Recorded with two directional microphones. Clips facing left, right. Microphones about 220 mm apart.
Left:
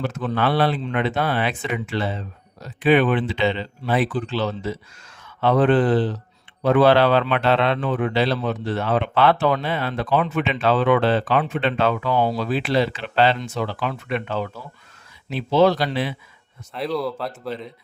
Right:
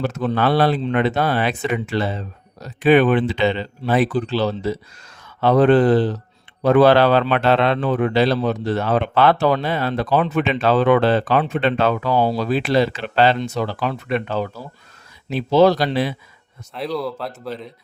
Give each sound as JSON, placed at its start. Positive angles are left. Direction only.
{"t": 0.0, "sound": "speech", "side_deg": -40}
{"t": 16.7, "sound": "speech", "side_deg": 0}